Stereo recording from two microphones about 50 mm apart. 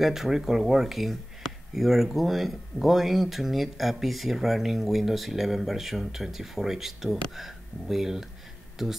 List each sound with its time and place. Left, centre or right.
0.0 s speech: centre